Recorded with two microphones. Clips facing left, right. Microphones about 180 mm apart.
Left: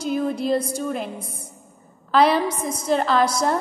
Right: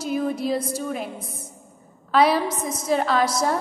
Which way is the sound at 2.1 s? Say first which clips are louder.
Left 1 dB; 5° right (ahead or behind).